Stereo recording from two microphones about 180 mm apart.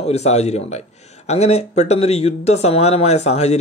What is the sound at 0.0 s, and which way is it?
Speech, 35° left (ahead or behind).